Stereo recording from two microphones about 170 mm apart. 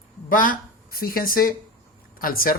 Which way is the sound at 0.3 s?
55° left (ahead or behind).